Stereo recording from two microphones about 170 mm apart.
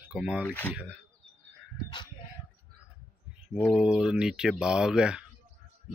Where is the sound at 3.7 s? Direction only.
5° right (ahead or behind).